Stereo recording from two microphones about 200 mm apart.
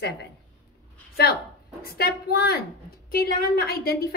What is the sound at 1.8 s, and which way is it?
Speech, 50° left (ahead or behind).